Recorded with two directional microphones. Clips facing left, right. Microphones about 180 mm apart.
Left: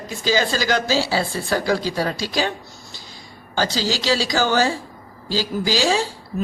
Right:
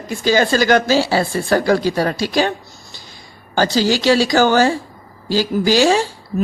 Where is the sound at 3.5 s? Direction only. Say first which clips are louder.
Right 6 dB; 55° right (ahead or behind).